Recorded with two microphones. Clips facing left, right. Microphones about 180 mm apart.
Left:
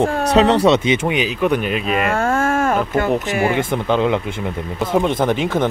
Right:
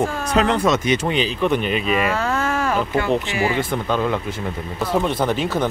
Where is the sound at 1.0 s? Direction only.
10° left (ahead or behind).